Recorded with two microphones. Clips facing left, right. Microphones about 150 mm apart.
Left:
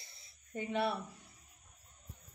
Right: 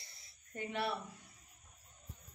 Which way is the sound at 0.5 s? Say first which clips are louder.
Left 4 dB; 20° left (ahead or behind).